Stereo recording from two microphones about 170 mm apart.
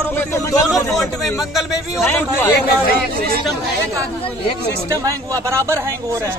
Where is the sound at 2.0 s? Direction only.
10° left (ahead or behind).